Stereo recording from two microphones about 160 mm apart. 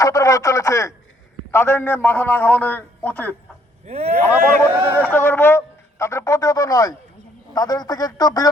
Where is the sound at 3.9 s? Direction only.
40° right (ahead or behind).